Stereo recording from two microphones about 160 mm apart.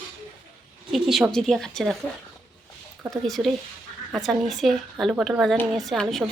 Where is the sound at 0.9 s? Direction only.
Centre (ahead or behind).